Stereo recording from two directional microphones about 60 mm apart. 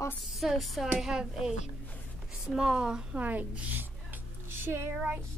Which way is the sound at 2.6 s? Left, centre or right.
Centre.